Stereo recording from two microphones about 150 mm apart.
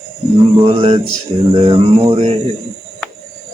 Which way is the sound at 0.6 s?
40° right (ahead or behind).